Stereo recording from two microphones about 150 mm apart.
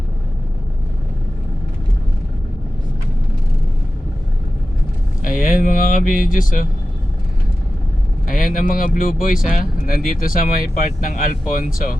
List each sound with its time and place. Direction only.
5.2 s speech: 65° left (ahead or behind)
8.3 s speech: 65° left (ahead or behind)